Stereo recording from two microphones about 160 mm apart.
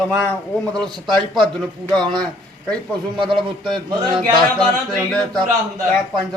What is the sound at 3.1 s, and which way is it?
Speech, 30° right (ahead or behind).